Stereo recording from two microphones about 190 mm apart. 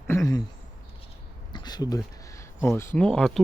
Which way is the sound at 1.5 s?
20° left (ahead or behind).